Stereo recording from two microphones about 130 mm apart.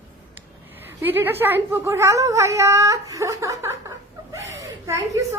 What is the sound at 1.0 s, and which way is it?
Speech, 15° right (ahead or behind).